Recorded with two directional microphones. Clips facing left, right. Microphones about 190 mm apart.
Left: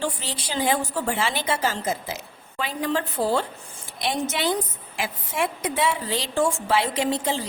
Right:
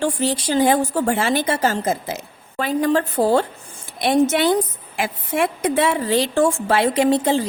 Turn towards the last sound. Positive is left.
turn(degrees=-55)  # may be behind; listen again after turning